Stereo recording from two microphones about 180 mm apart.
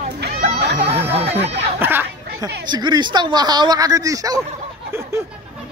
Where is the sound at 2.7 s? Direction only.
25° right (ahead or behind).